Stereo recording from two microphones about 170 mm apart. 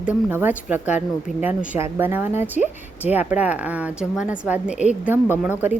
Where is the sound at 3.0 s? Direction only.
10° right (ahead or behind).